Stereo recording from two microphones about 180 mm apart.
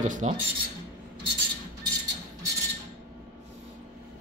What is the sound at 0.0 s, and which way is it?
Speech, 45° right (ahead or behind).